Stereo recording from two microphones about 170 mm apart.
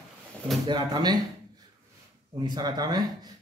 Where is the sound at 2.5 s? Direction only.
25° right (ahead or behind).